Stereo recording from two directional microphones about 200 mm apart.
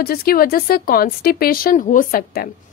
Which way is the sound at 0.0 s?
50° left (ahead or behind).